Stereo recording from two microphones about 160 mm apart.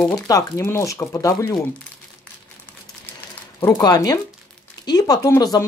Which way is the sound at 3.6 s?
20° left (ahead or behind).